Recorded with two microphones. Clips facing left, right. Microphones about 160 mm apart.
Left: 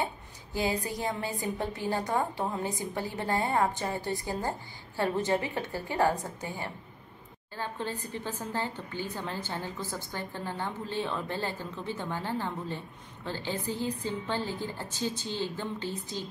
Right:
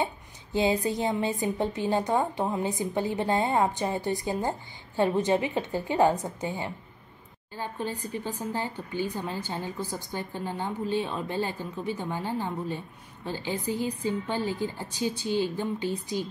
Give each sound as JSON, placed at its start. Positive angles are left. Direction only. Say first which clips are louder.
{"t": 0.0, "sound": "a woman's voice", "louder": "right 3 dB", "side_deg": -20}